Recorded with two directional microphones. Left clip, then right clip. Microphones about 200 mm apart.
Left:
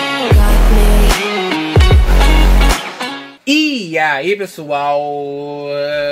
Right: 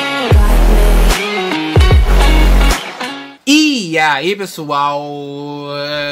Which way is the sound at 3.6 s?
30° right (ahead or behind).